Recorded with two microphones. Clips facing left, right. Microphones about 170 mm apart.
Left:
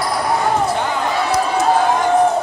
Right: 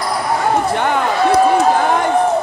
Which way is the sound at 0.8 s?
60° right (ahead or behind).